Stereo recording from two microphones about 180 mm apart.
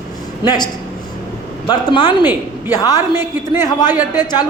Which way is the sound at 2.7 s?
20° left (ahead or behind).